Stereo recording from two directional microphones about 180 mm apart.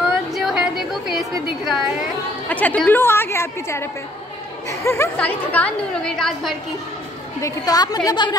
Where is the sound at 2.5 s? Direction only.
10° left (ahead or behind).